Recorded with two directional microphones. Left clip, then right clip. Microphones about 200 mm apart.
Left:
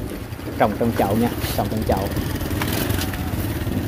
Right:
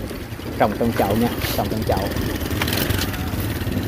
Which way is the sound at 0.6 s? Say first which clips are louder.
Even; centre (ahead or behind).